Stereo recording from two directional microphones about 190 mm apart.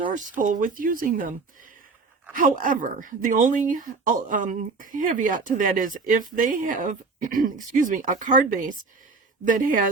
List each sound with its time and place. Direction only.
0.1 s speech: 40° right (ahead or behind)
2.3 s speech: 45° right (ahead or behind)